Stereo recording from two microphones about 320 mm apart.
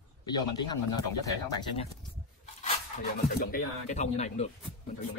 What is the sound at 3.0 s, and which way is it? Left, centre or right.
Speech, left.